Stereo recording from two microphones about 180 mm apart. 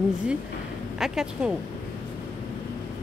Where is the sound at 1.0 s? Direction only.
5° right (ahead or behind).